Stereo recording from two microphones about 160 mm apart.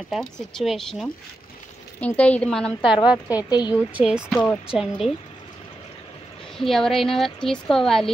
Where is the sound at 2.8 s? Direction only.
30° left (ahead or behind).